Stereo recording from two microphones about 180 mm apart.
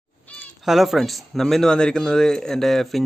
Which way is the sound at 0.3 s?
10° left (ahead or behind).